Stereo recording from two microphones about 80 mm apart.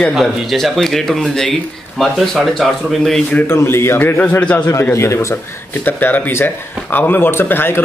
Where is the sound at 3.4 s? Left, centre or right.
Left.